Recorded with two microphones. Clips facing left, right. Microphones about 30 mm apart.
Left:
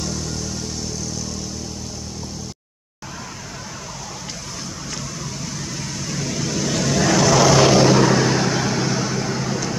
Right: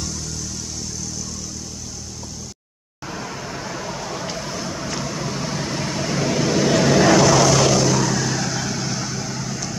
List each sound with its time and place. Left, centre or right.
4.6 s vehicle: centre
7.2 s vehicle: centre
7.4 s vehicle: centre